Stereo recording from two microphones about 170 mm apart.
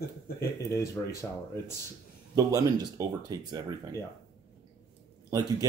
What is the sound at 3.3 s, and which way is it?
Speech, 20° right (ahead or behind).